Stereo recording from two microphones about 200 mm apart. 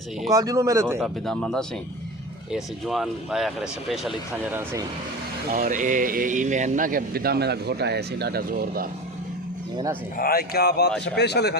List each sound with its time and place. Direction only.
0.3 s speech: 15° right (ahead or behind)
0.9 s speech: centre (ahead or behind)
5.5 s speech: 45° right (ahead or behind)
9.7 s speech: 15° right (ahead or behind)
10.2 s speech: 50° left (ahead or behind)